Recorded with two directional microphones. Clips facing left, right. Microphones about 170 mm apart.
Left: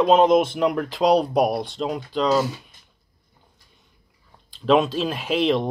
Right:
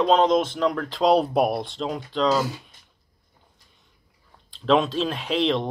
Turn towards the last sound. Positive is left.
turn(degrees=5)  # may be behind; listen again after turning